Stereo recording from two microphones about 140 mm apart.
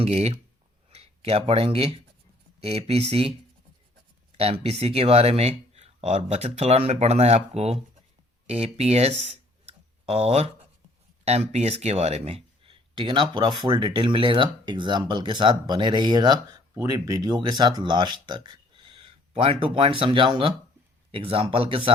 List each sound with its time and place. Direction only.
0.0 s speech: 50° right (ahead or behind)
4.4 s speech: 45° right (ahead or behind)